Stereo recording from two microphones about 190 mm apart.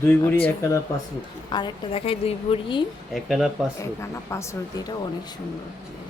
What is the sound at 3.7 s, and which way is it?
Speech, 15° left (ahead or behind).